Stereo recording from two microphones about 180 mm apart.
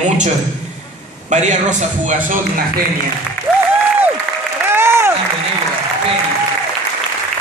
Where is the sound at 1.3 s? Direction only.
40° right (ahead or behind).